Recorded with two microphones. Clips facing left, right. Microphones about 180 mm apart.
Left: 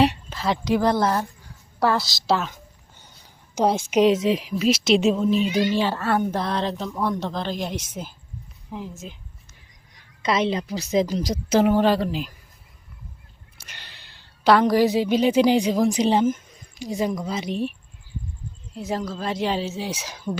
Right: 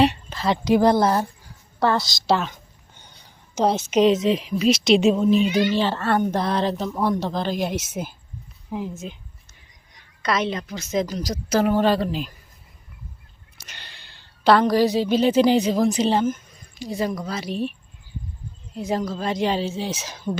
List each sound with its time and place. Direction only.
0.0 s a sound: 5° left (ahead or behind)
0.6 s a woman's voice: 15° right (ahead or behind)
1.8 s a woman's voice: 5° left (ahead or behind)
10.2 s a woman's voice: 30° left (ahead or behind)
11.7 s speech: 15° left (ahead or behind)
13.6 s a woman's voice: 10° left (ahead or behind)
18.7 s a woman's voice: centre (ahead or behind)